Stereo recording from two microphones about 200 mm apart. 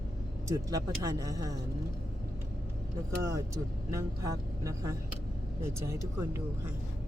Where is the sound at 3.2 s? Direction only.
15° right (ahead or behind).